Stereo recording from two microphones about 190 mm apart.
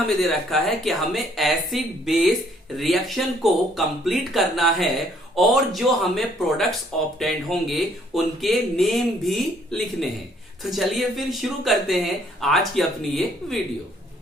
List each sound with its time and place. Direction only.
0.2 s speech: centre (ahead or behind)